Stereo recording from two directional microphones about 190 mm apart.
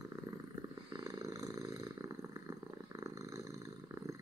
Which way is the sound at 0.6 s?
20° right (ahead or behind).